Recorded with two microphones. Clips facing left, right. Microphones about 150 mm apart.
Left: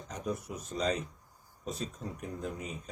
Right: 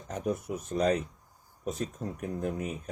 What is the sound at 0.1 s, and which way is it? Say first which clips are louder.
Speech: right 5 dB; 55° right (ahead or behind).